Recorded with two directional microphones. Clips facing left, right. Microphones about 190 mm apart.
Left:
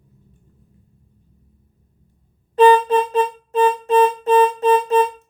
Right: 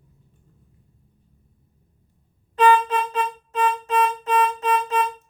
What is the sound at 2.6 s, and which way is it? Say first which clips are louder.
Music: left 6 dB; 30° left (ahead or behind).